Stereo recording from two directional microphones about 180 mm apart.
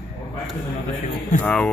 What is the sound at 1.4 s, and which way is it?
Speech, 5° left (ahead or behind).